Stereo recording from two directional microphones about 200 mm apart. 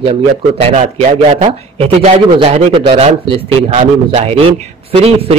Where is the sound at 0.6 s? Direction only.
30° right (ahead or behind).